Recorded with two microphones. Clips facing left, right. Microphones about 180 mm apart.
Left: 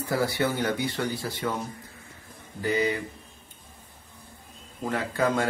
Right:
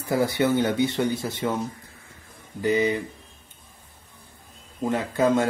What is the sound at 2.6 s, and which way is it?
Speech, 20° right (ahead or behind).